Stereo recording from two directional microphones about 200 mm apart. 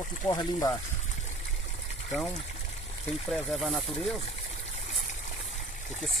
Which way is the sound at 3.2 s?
Centre (ahead or behind).